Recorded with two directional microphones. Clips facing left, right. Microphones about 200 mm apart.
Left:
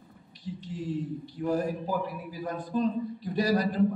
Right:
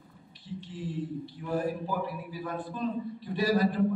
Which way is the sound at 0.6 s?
45° left (ahead or behind).